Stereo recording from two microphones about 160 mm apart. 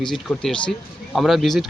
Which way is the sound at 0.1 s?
5° left (ahead or behind).